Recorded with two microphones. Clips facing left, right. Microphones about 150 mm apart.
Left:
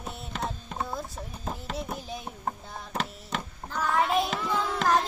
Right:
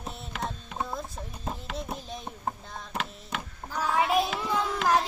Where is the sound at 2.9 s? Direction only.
40° left (ahead or behind).